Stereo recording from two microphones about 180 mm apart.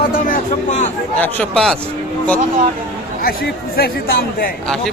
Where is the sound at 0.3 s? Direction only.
40° left (ahead or behind).